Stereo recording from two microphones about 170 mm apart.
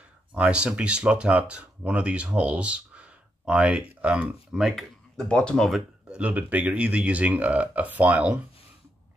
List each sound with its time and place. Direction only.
0.3 s speech: 5° right (ahead or behind)